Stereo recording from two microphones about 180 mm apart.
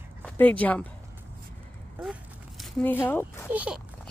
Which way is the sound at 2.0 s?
Centre (ahead or behind).